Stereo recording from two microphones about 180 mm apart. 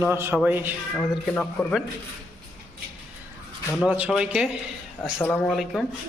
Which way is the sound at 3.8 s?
10° right (ahead or behind).